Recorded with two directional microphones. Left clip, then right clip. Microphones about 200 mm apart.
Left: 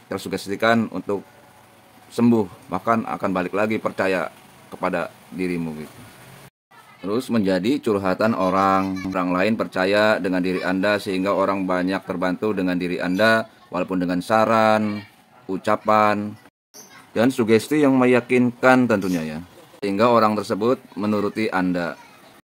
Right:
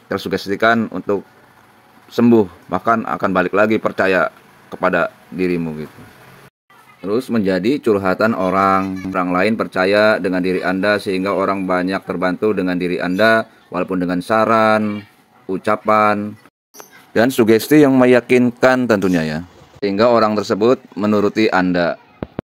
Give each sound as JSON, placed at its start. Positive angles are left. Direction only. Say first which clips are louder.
{"t": 0.1, "sound": "speech", "louder": "right 7 dB", "side_deg": -15}
{"t": 7.1, "sound": "speech", "louder": "right 4 dB", "side_deg": -20}